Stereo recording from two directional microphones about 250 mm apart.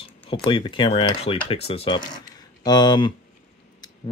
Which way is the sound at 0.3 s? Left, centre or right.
Centre.